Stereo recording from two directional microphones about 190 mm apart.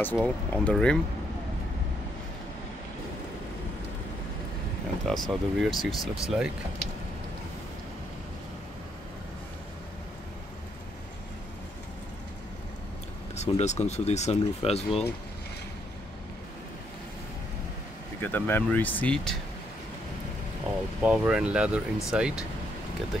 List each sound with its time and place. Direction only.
0.0 s speech: 10° left (ahead or behind)
5.0 s speech: centre (ahead or behind)
13.3 s speech: 35° left (ahead or behind)
18.2 s speech: 10° left (ahead or behind)
21.0 s speech: 5° right (ahead or behind)